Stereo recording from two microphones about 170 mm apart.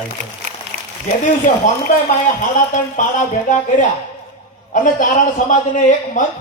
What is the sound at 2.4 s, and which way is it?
A man's voice, 50° left (ahead or behind).